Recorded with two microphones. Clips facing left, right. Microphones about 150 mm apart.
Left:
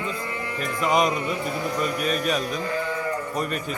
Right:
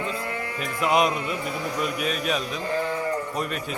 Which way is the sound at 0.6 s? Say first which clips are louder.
Even; 5° right (ahead or behind).